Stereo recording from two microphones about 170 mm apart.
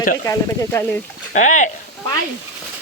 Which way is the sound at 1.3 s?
45° left (ahead or behind).